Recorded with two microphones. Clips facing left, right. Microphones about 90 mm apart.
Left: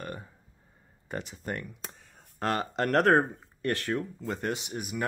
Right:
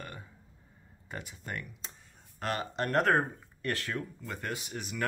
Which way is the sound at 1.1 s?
25° left (ahead or behind).